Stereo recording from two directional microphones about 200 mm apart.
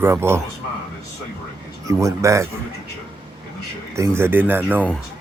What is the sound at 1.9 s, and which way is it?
Speech, 15° right (ahead or behind).